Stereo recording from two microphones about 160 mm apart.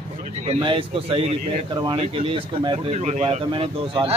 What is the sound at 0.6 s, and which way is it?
Speech, 30° right (ahead or behind).